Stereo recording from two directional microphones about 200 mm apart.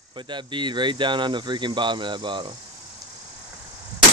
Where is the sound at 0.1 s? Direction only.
25° right (ahead or behind).